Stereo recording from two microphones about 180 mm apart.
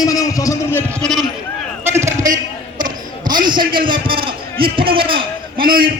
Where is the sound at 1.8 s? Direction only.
15° right (ahead or behind); by 5.7 s 30° right (ahead or behind).